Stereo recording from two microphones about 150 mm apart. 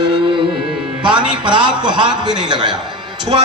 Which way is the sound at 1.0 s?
30° right (ahead or behind).